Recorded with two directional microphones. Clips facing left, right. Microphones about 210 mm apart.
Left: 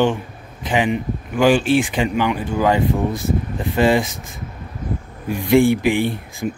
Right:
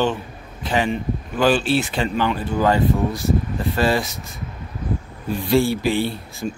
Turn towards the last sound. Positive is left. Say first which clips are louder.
# left 3 dB
turn(degrees=15)  # may be behind; listen again after turning